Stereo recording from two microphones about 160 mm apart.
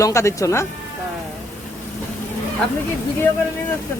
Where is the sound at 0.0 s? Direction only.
20° left (ahead or behind).